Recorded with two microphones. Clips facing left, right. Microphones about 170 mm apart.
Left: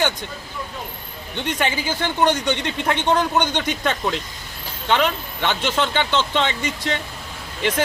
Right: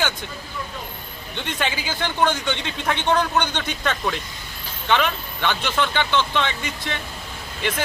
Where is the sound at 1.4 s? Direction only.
15° left (ahead or behind).